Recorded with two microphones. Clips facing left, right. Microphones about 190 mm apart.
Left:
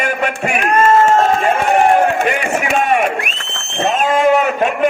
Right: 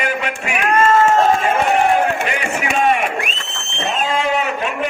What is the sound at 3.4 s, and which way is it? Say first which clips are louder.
Speech: left 6 dB; 55° left (ahead or behind).